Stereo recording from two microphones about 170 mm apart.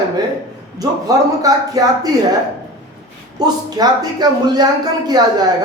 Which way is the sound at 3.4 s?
25° right (ahead or behind).